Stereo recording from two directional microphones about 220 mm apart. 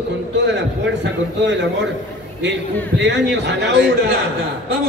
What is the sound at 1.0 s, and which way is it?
Speech, 50° right (ahead or behind).